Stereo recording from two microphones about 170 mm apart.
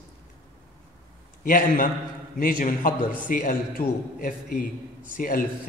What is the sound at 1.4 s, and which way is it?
A man's voice, 55° left (ahead or behind).